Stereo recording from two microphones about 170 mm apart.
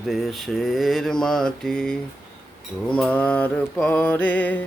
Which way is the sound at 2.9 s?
5° left (ahead or behind).